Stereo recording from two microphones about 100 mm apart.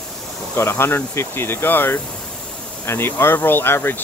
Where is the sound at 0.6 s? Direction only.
25° left (ahead or behind).